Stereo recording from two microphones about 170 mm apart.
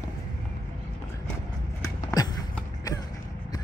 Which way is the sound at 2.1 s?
20° left (ahead or behind).